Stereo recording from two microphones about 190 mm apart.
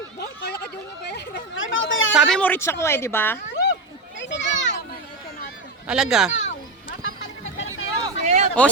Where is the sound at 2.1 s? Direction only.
Centre (ahead or behind).